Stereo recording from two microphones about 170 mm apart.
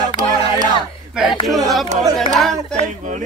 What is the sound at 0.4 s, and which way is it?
Crowd, 25° right (ahead or behind).